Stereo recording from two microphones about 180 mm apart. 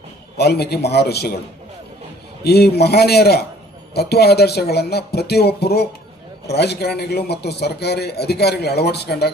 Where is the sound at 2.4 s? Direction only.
65° left (ahead or behind).